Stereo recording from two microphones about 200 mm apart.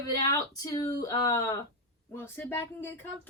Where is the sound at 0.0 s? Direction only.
15° left (ahead or behind).